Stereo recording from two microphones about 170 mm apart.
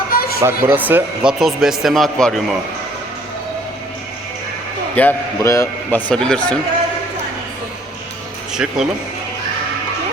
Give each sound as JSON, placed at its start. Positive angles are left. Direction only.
{"t": 0.1, "sound": "a sound", "side_deg": 60}
{"t": 0.3, "sound": "a man's voice", "side_deg": -15}
{"t": 4.9, "sound": "a man's voice", "side_deg": 15}
{"t": 8.5, "sound": "a man's voice", "side_deg": -5}